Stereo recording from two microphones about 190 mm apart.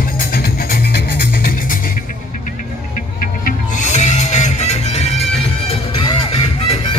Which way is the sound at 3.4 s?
40° left (ahead or behind).